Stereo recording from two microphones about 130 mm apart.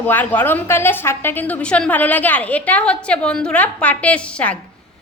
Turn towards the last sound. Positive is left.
turn(degrees=10)  # may be behind; listen again after turning